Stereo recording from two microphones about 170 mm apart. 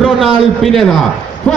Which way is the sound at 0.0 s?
Centre (ahead or behind).